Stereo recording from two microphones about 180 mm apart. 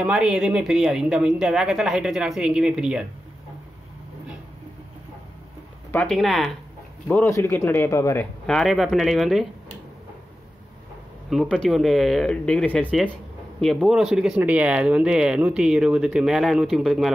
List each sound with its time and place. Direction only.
0.0 s speech: 5° right (ahead or behind)
5.9 s speech: 5° left (ahead or behind)
7.1 s a man's voice: 15° left (ahead or behind)
8.5 s speech: centre (ahead or behind)
11.2 s speech: 5° left (ahead or behind)